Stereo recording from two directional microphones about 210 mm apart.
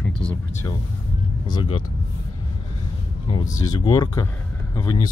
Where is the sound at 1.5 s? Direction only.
25° left (ahead or behind).